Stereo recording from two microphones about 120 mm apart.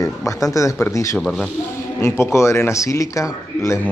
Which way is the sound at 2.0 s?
20° left (ahead or behind).